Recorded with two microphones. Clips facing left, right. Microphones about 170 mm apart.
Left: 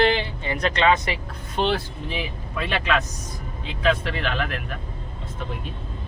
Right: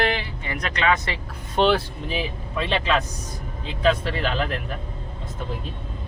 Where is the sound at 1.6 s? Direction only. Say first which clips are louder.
Right 4 dB; 60° right (ahead or behind).